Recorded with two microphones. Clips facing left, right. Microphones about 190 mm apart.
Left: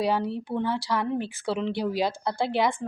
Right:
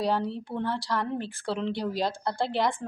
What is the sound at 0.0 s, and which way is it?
Speech, 5° left (ahead or behind).